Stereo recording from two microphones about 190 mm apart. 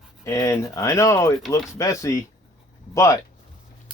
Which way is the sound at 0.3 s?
15° left (ahead or behind).